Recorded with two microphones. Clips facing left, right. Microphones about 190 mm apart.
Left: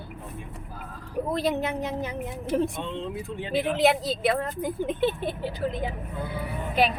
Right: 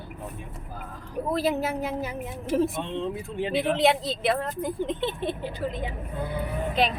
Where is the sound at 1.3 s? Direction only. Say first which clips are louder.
Right 2 dB; 5° right (ahead or behind).